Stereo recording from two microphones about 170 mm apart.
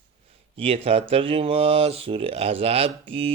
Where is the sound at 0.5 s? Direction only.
35° right (ahead or behind).